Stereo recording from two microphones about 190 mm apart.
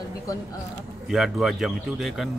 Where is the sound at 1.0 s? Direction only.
Centre (ahead or behind).